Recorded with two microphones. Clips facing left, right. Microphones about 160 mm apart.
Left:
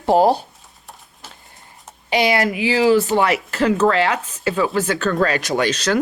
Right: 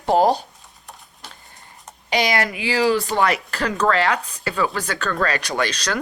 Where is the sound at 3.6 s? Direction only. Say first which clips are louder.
Left 4 dB; 25° left (ahead or behind).